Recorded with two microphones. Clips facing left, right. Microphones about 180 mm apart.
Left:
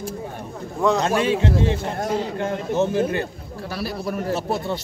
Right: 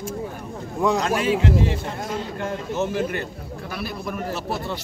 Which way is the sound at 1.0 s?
30° left (ahead or behind).